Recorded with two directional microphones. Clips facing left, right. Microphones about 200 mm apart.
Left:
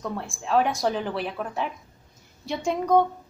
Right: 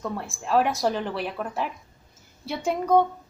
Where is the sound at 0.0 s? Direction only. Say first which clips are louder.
Even; centre (ahead or behind).